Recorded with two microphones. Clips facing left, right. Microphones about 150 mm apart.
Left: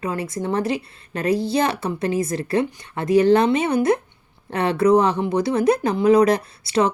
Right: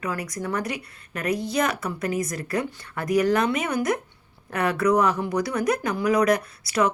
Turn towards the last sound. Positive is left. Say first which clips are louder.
# left 3 dB
turn(degrees=30)  # may be behind; listen again after turning